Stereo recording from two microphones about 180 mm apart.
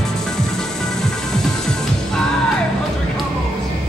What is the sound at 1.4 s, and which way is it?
Music, 5° left (ahead or behind).